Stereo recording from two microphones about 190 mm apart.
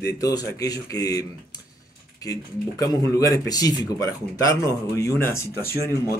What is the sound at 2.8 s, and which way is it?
Speech, 15° left (ahead or behind).